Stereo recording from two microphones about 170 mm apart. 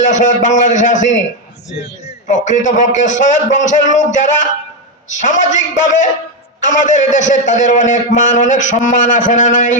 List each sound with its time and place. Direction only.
0.0 s a man's voice: 45° left (ahead or behind)
2.2 s a man's voice: 45° left (ahead or behind)